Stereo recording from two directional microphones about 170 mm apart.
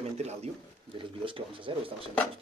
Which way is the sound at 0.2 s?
40° right (ahead or behind).